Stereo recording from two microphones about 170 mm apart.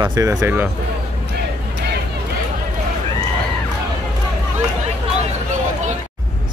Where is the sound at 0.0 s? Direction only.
20° right (ahead or behind).